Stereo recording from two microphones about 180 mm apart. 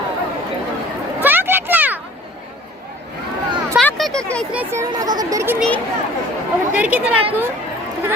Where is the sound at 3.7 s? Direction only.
Centre (ahead or behind).